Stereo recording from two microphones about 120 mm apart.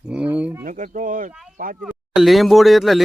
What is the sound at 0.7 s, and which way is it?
Speech, 90° right.